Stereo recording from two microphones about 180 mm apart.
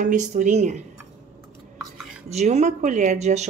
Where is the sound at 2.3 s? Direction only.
40° right (ahead or behind).